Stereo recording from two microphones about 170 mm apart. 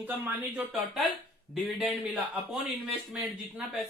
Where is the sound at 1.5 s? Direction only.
5° right (ahead or behind).